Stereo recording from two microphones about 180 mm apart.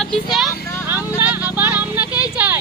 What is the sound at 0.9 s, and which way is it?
Vehicle, 10° right (ahead or behind).